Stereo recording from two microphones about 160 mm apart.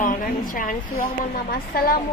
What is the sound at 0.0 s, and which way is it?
A woman's voice, 55° left (ahead or behind).